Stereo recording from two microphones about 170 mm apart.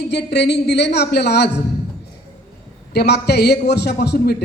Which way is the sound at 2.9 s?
75° left (ahead or behind).